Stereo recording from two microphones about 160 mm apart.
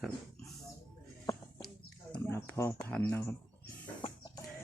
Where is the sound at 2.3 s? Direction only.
15° left (ahead or behind).